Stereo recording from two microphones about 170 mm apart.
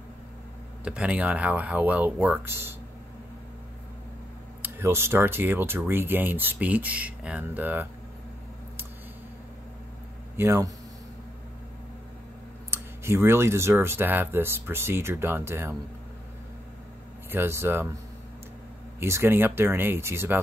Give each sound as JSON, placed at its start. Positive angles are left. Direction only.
{"t": 0.8, "sound": "speech", "side_deg": -5}
{"t": 4.6, "sound": "speech", "side_deg": -15}
{"t": 10.3, "sound": "speech", "side_deg": -15}
{"t": 12.7, "sound": "speech", "side_deg": -15}
{"t": 17.3, "sound": "speech", "side_deg": -15}
{"t": 18.9, "sound": "speech", "side_deg": -15}